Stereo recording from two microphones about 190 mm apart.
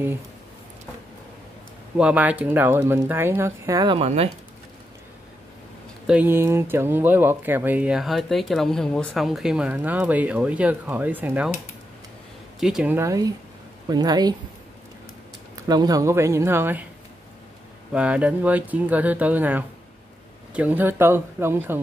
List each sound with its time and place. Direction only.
2.0 s speech: 5° right (ahead or behind); by 4.3 s 30° right (ahead or behind)
6.0 s speech: 10° right (ahead or behind)
12.5 s a woman's voice: 5° right (ahead or behind); by 14.3 s 20° right (ahead or behind)
15.5 s speech: 20° right (ahead or behind)
17.9 s speech: 5° right (ahead or behind)